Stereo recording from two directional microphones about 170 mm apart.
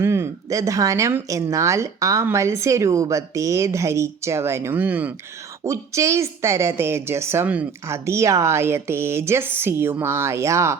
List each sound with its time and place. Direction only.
0.0 s speech: 15° right (ahead or behind)